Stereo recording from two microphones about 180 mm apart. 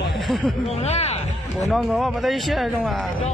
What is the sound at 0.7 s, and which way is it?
Speech, 35° left (ahead or behind).